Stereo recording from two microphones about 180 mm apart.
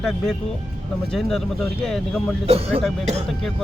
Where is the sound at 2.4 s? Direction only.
30° right (ahead or behind).